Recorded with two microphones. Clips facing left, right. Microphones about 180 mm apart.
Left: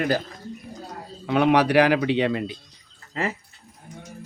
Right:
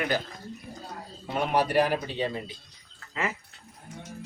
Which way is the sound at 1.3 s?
85° left.